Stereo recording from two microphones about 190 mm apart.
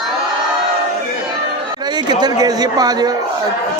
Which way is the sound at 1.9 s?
20° right (ahead or behind).